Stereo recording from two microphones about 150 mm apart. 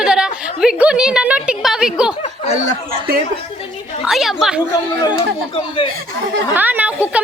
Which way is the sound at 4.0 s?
Centre (ahead or behind).